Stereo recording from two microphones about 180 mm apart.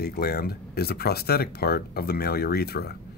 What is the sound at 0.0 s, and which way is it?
Speech, 60° left (ahead or behind).